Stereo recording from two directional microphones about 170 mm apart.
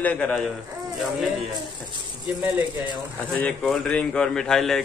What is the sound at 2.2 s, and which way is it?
Speech, 10° right (ahead or behind).